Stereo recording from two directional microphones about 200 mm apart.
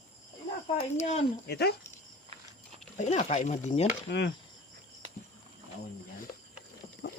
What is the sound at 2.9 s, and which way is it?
Speech, 35° left (ahead or behind).